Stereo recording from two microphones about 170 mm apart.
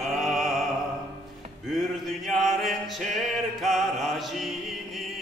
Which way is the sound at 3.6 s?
Centre (ahead or behind).